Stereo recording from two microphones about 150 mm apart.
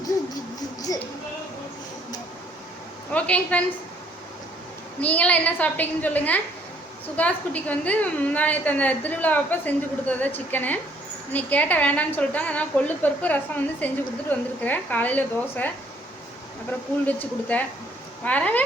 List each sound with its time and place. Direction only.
0.9 s a sound: 25° left (ahead or behind)
3.1 s a woman's voice: 10° left (ahead or behind)
4.9 s a woman's voice: 10° left (ahead or behind)
17.1 s a woman's voice: 10° left (ahead or behind)